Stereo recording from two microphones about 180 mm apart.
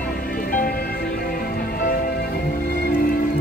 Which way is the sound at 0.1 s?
55° left (ahead or behind).